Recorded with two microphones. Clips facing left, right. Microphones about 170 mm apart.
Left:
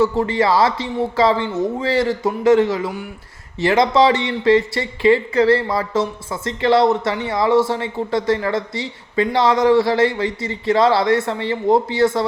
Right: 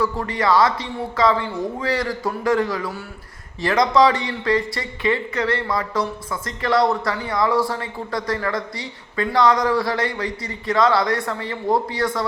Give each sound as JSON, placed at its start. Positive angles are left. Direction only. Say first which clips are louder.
{"t": 0.0, "sound": "speech", "louder": "left 5 dB", "side_deg": 25}